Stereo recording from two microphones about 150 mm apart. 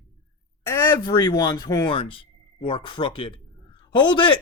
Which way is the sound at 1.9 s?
35° left (ahead or behind).